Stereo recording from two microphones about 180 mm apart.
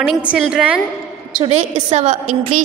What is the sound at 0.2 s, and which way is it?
Speech, 5° right (ahead or behind).